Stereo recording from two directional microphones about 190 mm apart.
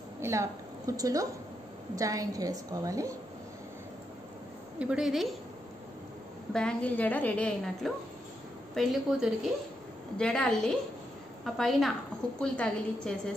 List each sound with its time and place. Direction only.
0.2 s a woman's voice: 15° right (ahead or behind)
4.7 s a woman's voice: 5° right (ahead or behind)
6.5 s a woman's voice: 5° left (ahead or behind)